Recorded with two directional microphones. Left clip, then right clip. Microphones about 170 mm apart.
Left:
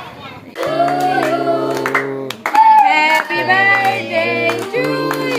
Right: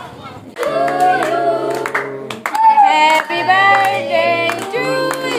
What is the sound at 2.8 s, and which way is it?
Child singing, 20° right (ahead or behind).